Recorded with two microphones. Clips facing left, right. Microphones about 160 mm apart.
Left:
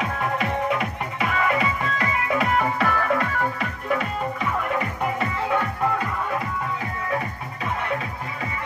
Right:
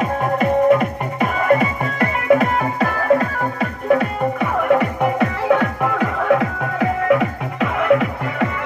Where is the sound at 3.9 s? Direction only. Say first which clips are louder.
Right 9 dB; 55° right (ahead or behind).